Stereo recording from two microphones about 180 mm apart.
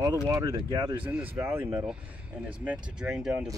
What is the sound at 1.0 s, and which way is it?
Speech, 10° right (ahead or behind).